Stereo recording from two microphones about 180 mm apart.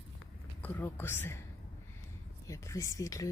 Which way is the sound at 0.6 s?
10° left (ahead or behind).